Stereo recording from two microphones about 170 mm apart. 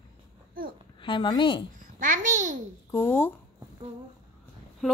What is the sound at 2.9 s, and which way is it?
Speech, 15° left (ahead or behind).